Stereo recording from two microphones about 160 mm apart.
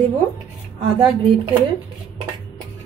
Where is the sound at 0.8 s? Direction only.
35° right (ahead or behind).